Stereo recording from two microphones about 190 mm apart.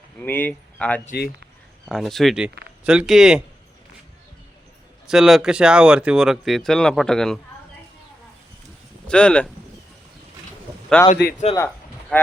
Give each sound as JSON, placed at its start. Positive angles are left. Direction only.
{"t": 0.2, "sound": "speech", "side_deg": 10}
{"t": 5.0, "sound": "speech", "side_deg": -5}
{"t": 9.0, "sound": "speech", "side_deg": 5}
{"t": 11.0, "sound": "speech", "side_deg": 10}
{"t": 11.5, "sound": "a sound", "side_deg": 10}